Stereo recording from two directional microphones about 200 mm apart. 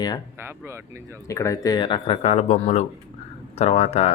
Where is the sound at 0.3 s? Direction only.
10° right (ahead or behind).